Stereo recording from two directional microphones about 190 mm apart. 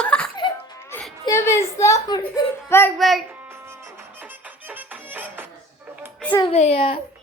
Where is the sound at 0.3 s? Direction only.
20° left (ahead or behind).